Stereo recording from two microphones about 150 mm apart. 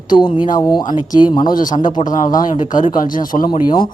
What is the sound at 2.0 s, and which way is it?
Speech, 55° left (ahead or behind).